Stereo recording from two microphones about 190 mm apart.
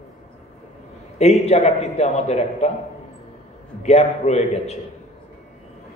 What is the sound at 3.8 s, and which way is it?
Speech, 35° left (ahead or behind).